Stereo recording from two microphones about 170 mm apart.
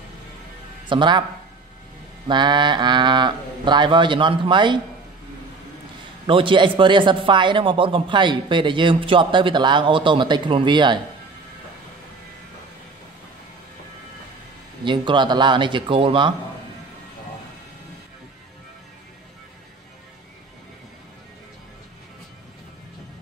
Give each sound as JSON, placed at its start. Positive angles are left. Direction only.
{"t": 0.8, "sound": "speech", "side_deg": -25}
{"t": 2.2, "sound": "speech", "side_deg": -25}
{"t": 6.2, "sound": "speech", "side_deg": -30}
{"t": 14.9, "sound": "speech", "side_deg": -25}